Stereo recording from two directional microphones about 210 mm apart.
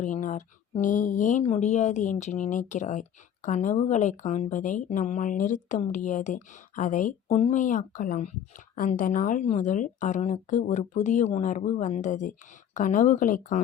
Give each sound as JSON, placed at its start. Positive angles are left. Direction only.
{"t": 0.0, "sound": "speech", "side_deg": 35}